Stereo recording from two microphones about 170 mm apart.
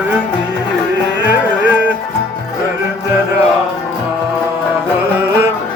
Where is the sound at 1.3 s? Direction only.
10° right (ahead or behind).